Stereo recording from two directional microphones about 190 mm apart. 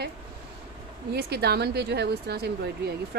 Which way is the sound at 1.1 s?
60° right (ahead or behind).